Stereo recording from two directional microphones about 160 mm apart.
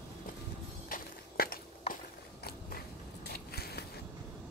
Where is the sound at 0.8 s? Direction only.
65° left (ahead or behind).